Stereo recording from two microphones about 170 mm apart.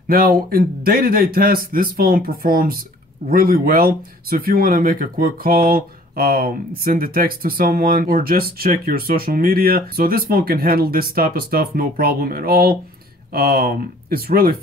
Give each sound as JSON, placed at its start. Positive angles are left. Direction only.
{"t": 0.1, "sound": "speech", "side_deg": -60}